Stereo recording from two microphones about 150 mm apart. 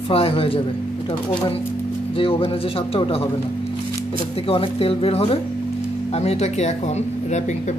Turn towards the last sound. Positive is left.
turn(degrees=50)  # may be behind; listen again after turning